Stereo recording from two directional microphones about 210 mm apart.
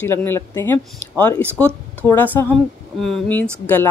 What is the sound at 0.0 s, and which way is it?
A woman's voice, 10° left (ahead or behind).